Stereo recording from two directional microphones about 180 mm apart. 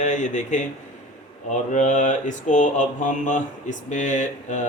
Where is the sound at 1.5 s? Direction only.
45° left (ahead or behind).